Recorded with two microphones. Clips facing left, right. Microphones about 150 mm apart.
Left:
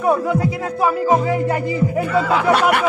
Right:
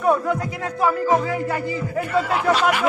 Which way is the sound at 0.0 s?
5° left (ahead or behind).